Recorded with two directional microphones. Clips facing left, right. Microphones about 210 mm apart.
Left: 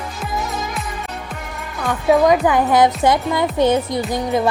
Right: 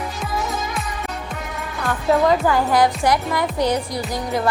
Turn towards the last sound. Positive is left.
turn(degrees=25)  # may be behind; listen again after turning